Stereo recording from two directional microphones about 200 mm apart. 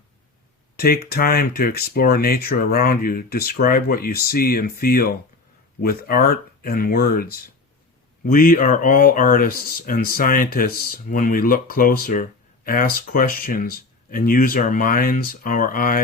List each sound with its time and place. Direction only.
0.8 s speech: 50° left (ahead or behind)